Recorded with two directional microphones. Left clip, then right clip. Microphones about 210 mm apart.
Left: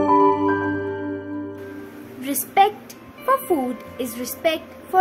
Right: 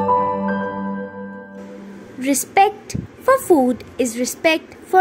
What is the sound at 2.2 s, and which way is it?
A woman's voice, 25° right (ahead or behind).